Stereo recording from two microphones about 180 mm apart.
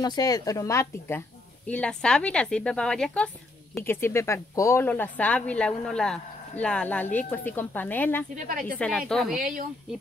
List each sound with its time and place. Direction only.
0.0 s a woman's voice: 20° left (ahead or behind)
8.5 s a woman's voice: 50° right (ahead or behind)
8.7 s a woman's voice: 5° left (ahead or behind)